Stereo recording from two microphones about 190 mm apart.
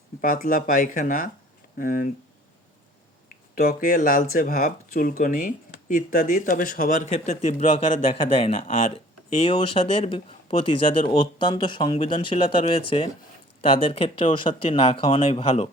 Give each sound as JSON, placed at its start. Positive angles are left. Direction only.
{"t": 0.2, "sound": "speech", "side_deg": 50}
{"t": 3.5, "sound": "speech", "side_deg": 50}